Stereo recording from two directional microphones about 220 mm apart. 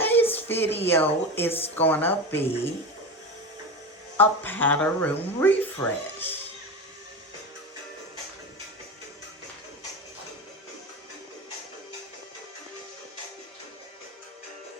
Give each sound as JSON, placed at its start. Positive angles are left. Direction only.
{"t": 0.0, "sound": "a sound", "side_deg": 10}
{"t": 0.9, "sound": "speech", "side_deg": 10}
{"t": 1.5, "sound": "speech", "side_deg": 25}
{"t": 1.7, "sound": "speech", "side_deg": 10}
{"t": 4.2, "sound": "speech", "side_deg": 10}